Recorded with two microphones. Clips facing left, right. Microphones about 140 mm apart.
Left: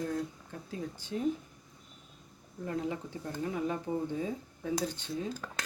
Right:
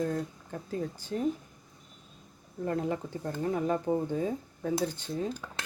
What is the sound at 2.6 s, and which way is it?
Speech, 50° right (ahead or behind).